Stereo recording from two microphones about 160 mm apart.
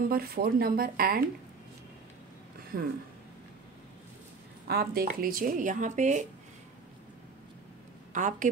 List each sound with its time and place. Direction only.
0.1 s speech: 70° right (ahead or behind)
2.7 s speech: 60° right (ahead or behind)
4.6 s speech: 70° right (ahead or behind); by 6.2 s 50° right (ahead or behind)
8.1 s a woman's voice: 50° right (ahead or behind)